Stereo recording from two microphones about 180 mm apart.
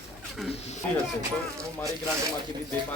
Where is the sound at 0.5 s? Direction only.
35° left (ahead or behind).